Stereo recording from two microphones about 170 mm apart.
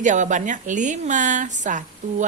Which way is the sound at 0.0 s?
45° right (ahead or behind).